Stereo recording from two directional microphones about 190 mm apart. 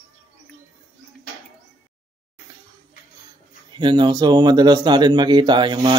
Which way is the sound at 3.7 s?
25° right (ahead or behind).